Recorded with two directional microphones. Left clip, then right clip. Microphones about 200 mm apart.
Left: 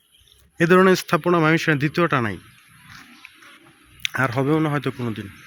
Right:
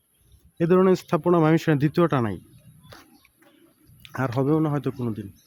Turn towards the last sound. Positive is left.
turn(degrees=-5)  # may be behind; listen again after turning